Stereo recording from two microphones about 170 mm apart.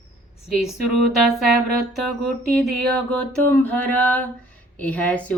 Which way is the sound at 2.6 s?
Centre (ahead or behind).